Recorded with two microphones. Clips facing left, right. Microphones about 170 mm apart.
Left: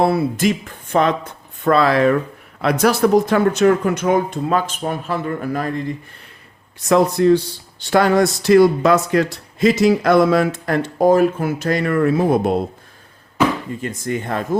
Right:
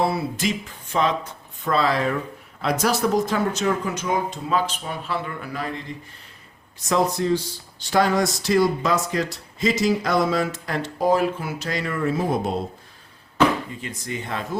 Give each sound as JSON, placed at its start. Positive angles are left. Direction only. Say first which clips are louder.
{"t": 0.0, "sound": "speech", "louder": "left 7 dB", "side_deg": 55}
{"t": 6.8, "sound": "speech", "louder": "left 8 dB", "side_deg": 60}
{"t": 13.8, "sound": "speech", "louder": "left 8 dB", "side_deg": 50}